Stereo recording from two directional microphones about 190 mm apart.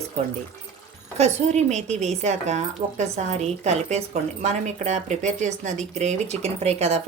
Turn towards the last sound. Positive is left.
turn(degrees=-35)  # may be behind; listen again after turning